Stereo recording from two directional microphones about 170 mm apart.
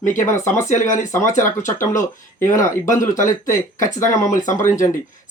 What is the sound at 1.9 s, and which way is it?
Speech, 50° left (ahead or behind).